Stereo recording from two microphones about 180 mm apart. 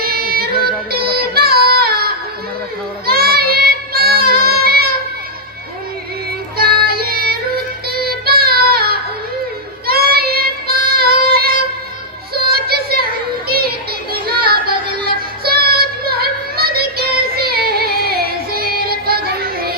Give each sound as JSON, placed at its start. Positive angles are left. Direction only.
{"t": 0.0, "sound": "child singing", "side_deg": -60}
{"t": 6.6, "sound": "music", "side_deg": -60}
{"t": 8.2, "sound": "child singing", "side_deg": -60}
{"t": 12.3, "sound": "music", "side_deg": -60}
{"t": 13.5, "sound": "child singing", "side_deg": -60}
{"t": 14.7, "sound": "a sound", "side_deg": -25}
{"t": 15.0, "sound": "child singing", "side_deg": -60}